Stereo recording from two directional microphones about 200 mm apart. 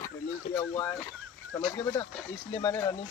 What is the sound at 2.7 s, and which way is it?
Speech, 10° left (ahead or behind).